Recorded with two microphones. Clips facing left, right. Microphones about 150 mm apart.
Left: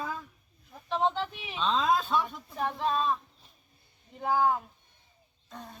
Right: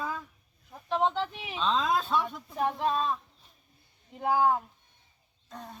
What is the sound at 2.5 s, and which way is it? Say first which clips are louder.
Speech: right 1 dB; 10° right (ahead or behind).